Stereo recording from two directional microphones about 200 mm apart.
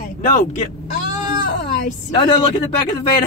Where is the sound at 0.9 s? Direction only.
45° left (ahead or behind).